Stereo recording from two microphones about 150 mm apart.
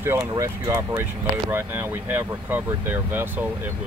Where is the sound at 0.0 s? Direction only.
20° right (ahead or behind).